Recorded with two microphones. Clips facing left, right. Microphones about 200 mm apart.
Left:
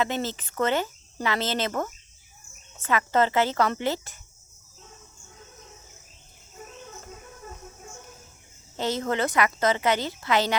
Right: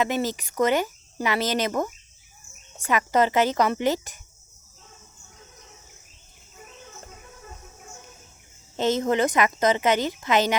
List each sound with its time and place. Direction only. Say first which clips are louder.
0.0 s a woman's voice: right 3 dB; 15° right (ahead or behind)
8.7 s a woman's voice: right 5 dB; 20° right (ahead or behind)